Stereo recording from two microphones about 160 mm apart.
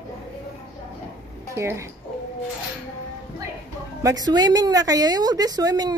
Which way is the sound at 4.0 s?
25° right (ahead or behind).